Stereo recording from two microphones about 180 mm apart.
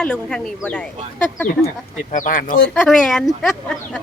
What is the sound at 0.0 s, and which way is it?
Speech, 5° left (ahead or behind).